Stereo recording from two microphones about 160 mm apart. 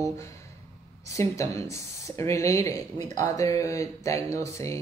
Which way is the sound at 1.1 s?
20° left (ahead or behind).